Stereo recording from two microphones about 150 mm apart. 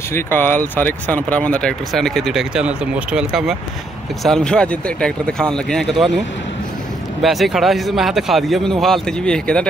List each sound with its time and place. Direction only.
0.1 s speech: 15° left (ahead or behind)